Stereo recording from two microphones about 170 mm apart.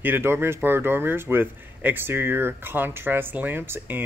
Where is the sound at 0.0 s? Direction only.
15° right (ahead or behind).